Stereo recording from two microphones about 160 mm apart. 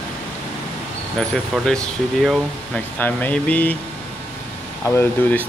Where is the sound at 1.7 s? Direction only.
5° left (ahead or behind).